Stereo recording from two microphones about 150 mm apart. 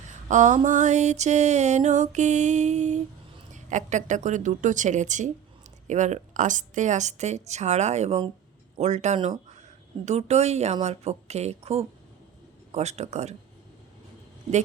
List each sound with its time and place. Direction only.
0.3 s music: 55° right (ahead or behind)
3.5 s speech: 55° right (ahead or behind)
5.9 s music: 55° right (ahead or behind)